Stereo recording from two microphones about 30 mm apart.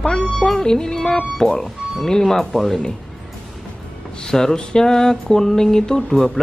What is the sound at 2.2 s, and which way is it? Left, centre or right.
Speech, centre.